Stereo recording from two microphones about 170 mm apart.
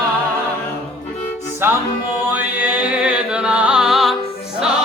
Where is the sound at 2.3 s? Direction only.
10° right (ahead or behind).